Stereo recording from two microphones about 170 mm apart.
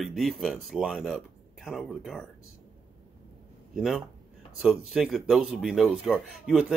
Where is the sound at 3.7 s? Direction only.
Centre (ahead or behind).